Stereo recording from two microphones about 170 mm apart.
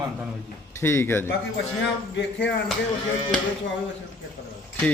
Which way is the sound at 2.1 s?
90° left.